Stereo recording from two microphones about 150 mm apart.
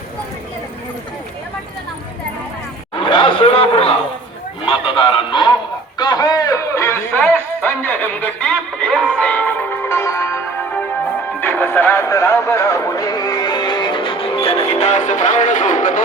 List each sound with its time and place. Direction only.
2.9 s chatter: 35° left (ahead or behind)
4.6 s music: 35° left (ahead or behind)
6.0 s a sound: 25° left (ahead or behind)
11.3 s music: 15° left (ahead or behind); by 16.0 s 60° left (ahead or behind)